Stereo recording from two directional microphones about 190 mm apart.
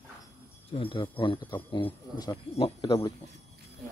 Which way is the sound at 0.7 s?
25° left (ahead or behind).